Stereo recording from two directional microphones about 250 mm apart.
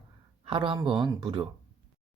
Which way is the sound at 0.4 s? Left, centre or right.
Right.